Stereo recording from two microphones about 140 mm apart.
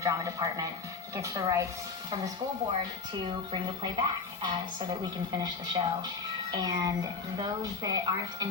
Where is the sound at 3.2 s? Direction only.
35° right (ahead or behind).